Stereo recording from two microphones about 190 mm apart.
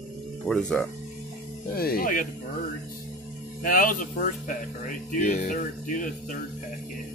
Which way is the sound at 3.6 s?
45° left (ahead or behind).